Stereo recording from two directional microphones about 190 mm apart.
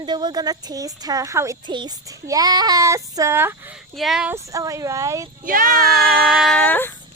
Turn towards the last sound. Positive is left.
turn(degrees=10)  # may be behind; listen again after turning